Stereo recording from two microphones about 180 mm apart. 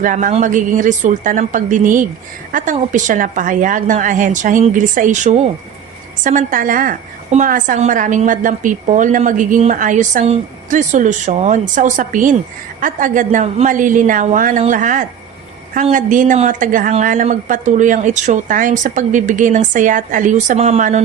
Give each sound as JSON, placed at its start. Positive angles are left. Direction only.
{"t": 0.0, "sound": "a woman's voice", "side_deg": -45}